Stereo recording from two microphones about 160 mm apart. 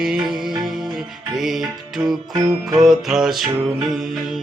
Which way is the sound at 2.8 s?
Centre (ahead or behind).